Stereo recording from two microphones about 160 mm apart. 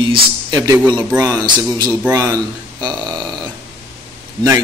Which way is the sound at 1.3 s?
25° right (ahead or behind).